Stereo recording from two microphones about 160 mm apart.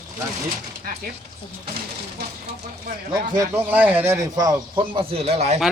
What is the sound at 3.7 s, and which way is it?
Speech, 10° right (ahead or behind).